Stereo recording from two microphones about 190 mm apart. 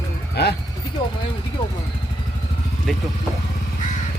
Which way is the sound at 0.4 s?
60° left (ahead or behind).